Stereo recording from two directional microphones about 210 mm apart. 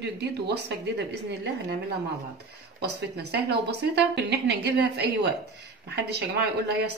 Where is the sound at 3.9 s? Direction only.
50° right (ahead or behind).